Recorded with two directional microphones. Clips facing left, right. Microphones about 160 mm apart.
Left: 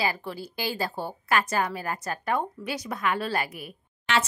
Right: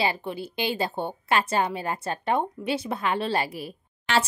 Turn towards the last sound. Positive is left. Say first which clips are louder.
# right 2 dB
turn(degrees=-30)  # may be behind; listen again after turning